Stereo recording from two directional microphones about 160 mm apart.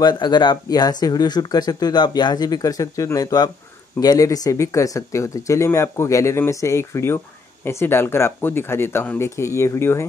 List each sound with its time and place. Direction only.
0.0 s speech: 25° left (ahead or behind)